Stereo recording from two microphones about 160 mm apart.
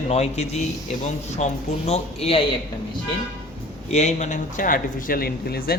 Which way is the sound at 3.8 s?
45° left (ahead or behind).